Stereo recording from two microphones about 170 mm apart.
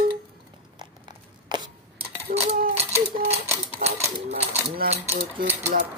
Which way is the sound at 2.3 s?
60° right (ahead or behind).